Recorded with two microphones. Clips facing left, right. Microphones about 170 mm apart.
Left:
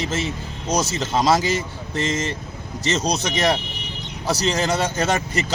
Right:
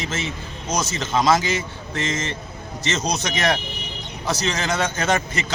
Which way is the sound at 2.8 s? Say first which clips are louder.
Left 2 dB; 35° left (ahead or behind).